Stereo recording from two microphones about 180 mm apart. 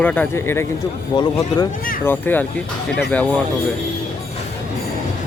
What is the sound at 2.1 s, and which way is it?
Speech, 10° left (ahead or behind).